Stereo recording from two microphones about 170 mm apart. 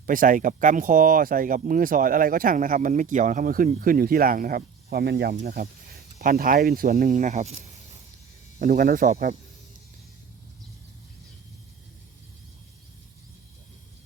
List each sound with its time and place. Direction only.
0.0 s speech: 55° right (ahead or behind)
8.5 s speech: 55° right (ahead or behind)